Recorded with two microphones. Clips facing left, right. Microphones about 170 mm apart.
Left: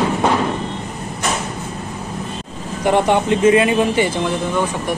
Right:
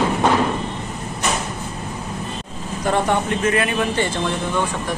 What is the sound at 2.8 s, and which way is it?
Speech, 15° left (ahead or behind).